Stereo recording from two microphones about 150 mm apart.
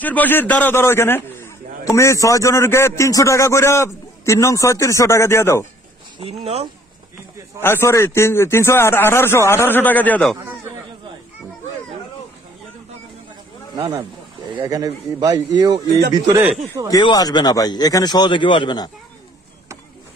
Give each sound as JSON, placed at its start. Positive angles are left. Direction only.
{"t": 0.0, "sound": "a man's voice", "side_deg": 10}
{"t": 6.2, "sound": "speech", "side_deg": -45}
{"t": 7.6, "sound": "a man's voice", "side_deg": 15}
{"t": 14.6, "sound": "a man's voice", "side_deg": -25}
{"t": 16.9, "sound": "a man's voice", "side_deg": 25}